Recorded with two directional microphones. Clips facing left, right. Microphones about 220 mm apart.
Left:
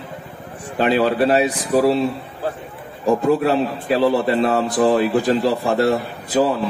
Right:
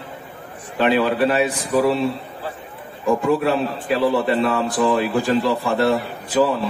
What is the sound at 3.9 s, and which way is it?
Speech, 40° left (ahead or behind).